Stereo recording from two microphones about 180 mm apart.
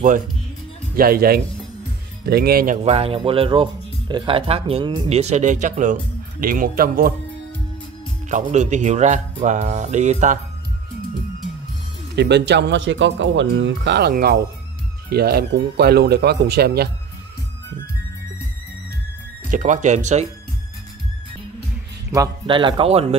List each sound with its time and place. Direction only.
0.9 s speech: 55° right (ahead or behind)
2.8 s speech: 35° right (ahead or behind); by 7.2 s 55° right (ahead or behind)
8.3 s speech: 45° right (ahead or behind)
12.2 s speech: 70° right (ahead or behind)
14.1 s speech: 60° right (ahead or behind)
19.5 s speech: 45° right (ahead or behind)
22.1 s speech: 25° right (ahead or behind)